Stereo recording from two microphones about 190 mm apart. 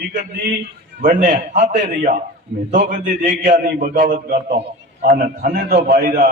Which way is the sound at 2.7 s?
40° right (ahead or behind).